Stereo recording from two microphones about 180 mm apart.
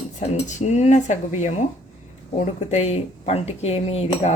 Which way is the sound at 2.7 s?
35° left (ahead or behind).